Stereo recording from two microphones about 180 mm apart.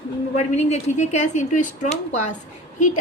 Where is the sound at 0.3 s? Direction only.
40° left (ahead or behind).